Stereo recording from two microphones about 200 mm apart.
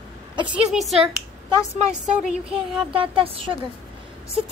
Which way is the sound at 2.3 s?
30° right (ahead or behind).